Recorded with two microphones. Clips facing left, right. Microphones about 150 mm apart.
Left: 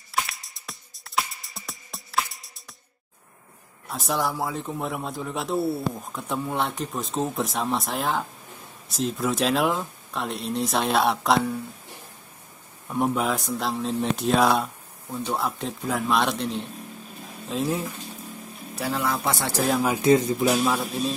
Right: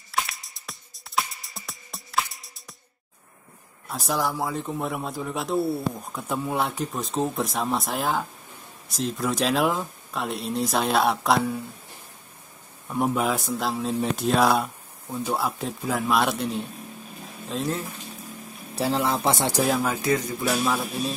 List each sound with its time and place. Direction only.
0.1 s music: centre (ahead or behind)
3.9 s a man's voice: centre (ahead or behind)
12.9 s a man's voice: centre (ahead or behind)
18.8 s speech: 30° right (ahead or behind)
19.8 s speech: 20° left (ahead or behind)
20.5 s a man's voice: 5° left (ahead or behind)